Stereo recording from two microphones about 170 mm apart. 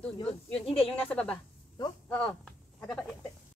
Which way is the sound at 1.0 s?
5° left (ahead or behind).